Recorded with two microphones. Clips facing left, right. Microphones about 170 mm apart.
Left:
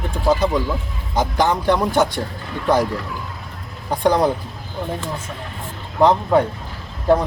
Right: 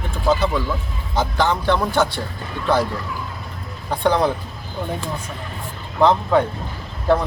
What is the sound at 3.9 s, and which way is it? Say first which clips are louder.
Speech: left 2 dB; 15° left (ahead or behind).